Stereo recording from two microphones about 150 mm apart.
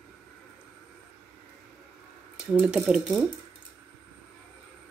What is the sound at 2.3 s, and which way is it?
Speech, 5° right (ahead or behind).